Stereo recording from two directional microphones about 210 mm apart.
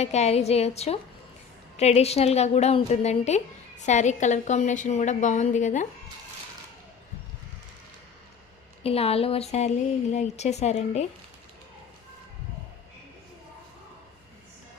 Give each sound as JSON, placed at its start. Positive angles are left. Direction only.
{"t": 0.0, "sound": "speech", "side_deg": 30}
{"t": 8.8, "sound": "speech", "side_deg": 30}